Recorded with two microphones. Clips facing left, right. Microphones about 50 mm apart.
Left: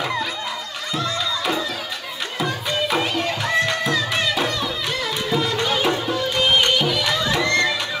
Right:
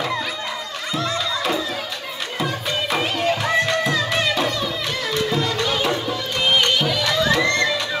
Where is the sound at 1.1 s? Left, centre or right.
Centre.